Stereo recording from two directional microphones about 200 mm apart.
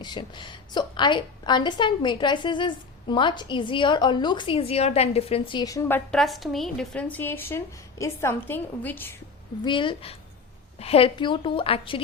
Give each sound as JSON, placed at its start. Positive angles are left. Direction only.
{"t": 0.0, "sound": "a woman's voice", "side_deg": 25}
{"t": 6.1, "sound": "a woman's voice", "side_deg": 0}
{"t": 9.6, "sound": "a woman's voice", "side_deg": 25}